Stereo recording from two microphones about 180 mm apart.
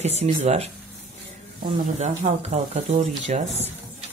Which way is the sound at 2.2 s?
40° right (ahead or behind).